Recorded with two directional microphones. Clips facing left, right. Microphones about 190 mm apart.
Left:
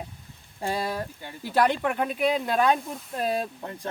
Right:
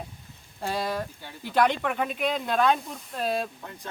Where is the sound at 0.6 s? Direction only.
10° left (ahead or behind).